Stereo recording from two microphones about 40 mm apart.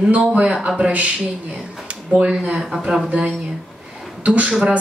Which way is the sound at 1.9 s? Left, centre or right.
Right.